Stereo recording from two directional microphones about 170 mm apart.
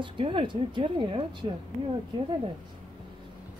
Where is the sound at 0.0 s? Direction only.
30° right (ahead or behind).